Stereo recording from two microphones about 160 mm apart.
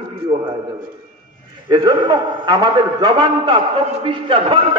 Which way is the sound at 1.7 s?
25° right (ahead or behind).